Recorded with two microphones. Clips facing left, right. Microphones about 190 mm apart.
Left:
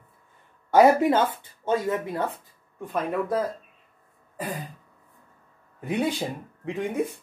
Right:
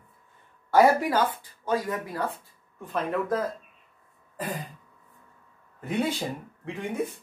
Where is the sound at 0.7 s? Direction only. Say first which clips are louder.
Left 3 dB; 25° left (ahead or behind).